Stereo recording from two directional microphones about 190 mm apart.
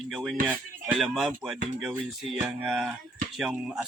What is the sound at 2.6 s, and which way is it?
Speech, 5° right (ahead or behind).